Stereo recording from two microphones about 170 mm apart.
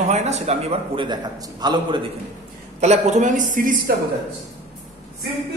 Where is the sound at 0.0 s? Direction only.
40° right (ahead or behind); by 2.0 s 25° right (ahead or behind).